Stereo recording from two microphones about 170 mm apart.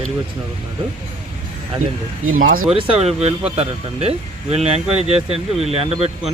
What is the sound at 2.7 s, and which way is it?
Speech, 30° right (ahead or behind).